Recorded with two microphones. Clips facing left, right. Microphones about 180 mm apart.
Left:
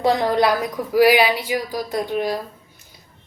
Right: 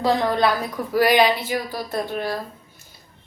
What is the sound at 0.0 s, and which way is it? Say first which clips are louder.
A woman's voice: left 2 dB; 20° left (ahead or behind).